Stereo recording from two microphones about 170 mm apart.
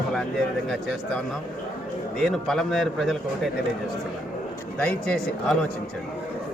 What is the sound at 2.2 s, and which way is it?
A man's voice, centre (ahead or behind).